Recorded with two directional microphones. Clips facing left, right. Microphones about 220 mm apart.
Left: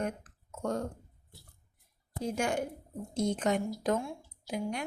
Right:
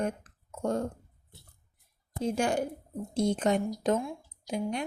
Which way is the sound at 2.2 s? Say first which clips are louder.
Right 3 dB; 30° right (ahead or behind).